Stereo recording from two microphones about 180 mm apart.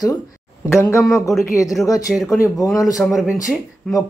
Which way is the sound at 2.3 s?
15° left (ahead or behind).